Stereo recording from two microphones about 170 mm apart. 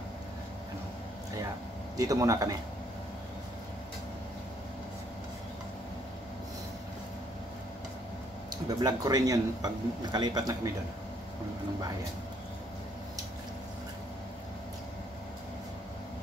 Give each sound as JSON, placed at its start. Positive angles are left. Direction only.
{"t": 2.0, "sound": "speech", "side_deg": -20}
{"t": 8.6, "sound": "speech", "side_deg": -20}